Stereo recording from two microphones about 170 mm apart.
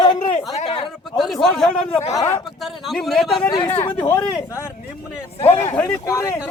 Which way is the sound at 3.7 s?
40° left (ahead or behind).